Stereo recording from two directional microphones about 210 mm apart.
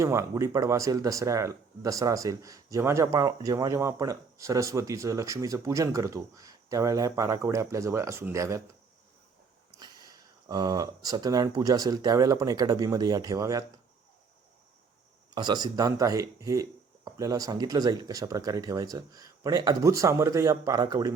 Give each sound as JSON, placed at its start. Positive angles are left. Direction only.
{"t": 0.0, "sound": "speech", "side_deg": -15}
{"t": 9.7, "sound": "speech", "side_deg": -20}
{"t": 15.3, "sound": "speech", "side_deg": -20}